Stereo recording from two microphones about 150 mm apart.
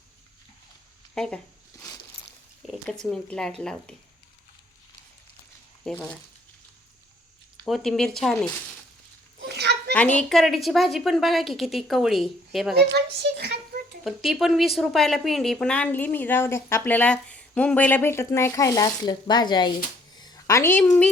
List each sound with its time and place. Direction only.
1.1 s speech: 5° left (ahead or behind)
2.6 s a woman's voice: 5° left (ahead or behind)
5.8 s a woman's voice: 5° left (ahead or behind)
7.6 s a woman's voice: 5° left (ahead or behind)
9.6 s a sound: 90° right
9.9 s a woman's voice: 10° left (ahead or behind)
13.2 s speech: 90° right
14.0 s speech: centre (ahead or behind); by 19.7 s 30° left (ahead or behind)
20.1 s a sound: 25° left (ahead or behind)